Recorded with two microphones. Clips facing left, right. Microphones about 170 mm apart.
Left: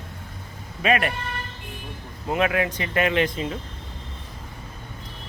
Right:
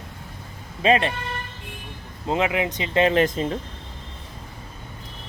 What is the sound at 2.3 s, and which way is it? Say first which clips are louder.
Speech: even; 20° right (ahead or behind).